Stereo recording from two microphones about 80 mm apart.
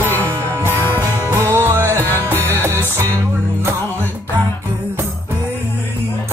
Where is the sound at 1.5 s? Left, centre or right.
Right.